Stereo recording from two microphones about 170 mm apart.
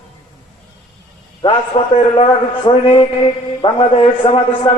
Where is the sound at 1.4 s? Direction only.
30° left (ahead or behind).